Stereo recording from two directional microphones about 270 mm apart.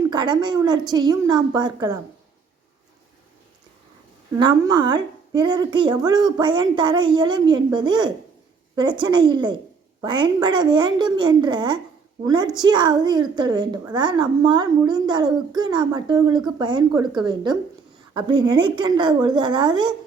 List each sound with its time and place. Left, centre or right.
0.1 s a woman's voice: centre
4.4 s a woman's voice: centre